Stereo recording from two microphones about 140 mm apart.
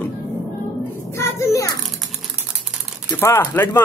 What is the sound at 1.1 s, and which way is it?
Speech, 20° left (ahead or behind).